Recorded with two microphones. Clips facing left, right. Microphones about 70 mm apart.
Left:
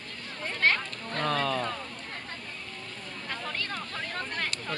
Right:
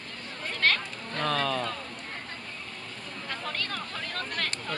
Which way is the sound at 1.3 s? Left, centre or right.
Centre.